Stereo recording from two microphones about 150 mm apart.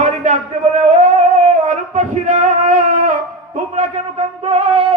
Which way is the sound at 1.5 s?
55° right (ahead or behind).